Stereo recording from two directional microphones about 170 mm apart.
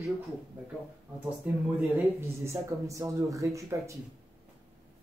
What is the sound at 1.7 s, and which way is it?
Speech, 10° right (ahead or behind).